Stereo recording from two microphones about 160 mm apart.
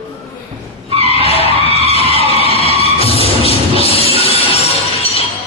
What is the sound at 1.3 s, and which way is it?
Skidding, 40° left (ahead or behind).